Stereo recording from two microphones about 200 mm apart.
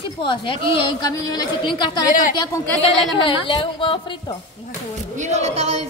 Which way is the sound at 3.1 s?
25° left (ahead or behind).